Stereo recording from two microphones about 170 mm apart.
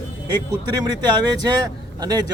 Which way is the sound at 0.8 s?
20° right (ahead or behind).